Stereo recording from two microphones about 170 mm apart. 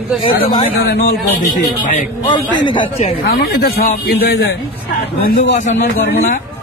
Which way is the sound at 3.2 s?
65° left (ahead or behind).